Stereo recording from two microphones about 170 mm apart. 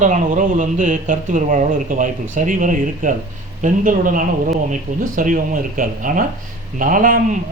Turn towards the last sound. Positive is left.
turn(degrees=-50)  # may be behind; listen again after turning